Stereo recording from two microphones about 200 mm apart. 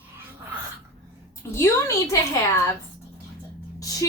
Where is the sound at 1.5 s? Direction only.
15° left (ahead or behind).